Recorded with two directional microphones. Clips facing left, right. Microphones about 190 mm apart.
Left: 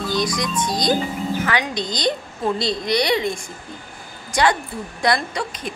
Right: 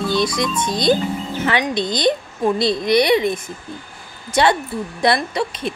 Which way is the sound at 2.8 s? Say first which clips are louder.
Right 6 dB; 20° right (ahead or behind).